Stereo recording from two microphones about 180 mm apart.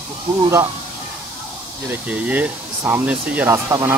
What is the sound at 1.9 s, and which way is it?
Speech, 10° right (ahead or behind).